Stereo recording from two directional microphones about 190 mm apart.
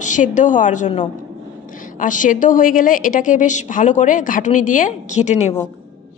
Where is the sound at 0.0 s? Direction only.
40° left (ahead or behind).